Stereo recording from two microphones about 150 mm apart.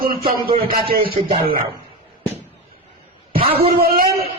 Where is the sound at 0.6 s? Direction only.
85° right.